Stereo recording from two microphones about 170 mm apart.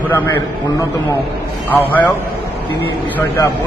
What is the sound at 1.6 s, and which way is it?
Speech, 10° left (ahead or behind).